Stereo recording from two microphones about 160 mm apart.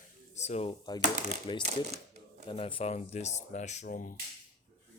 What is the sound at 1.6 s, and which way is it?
Shuffling cards, 45° right (ahead or behind).